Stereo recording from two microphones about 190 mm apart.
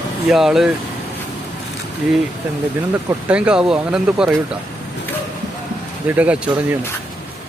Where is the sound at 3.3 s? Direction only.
5° right (ahead or behind).